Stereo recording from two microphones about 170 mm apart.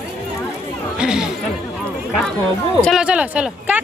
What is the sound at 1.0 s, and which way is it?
Speech, 5° right (ahead or behind).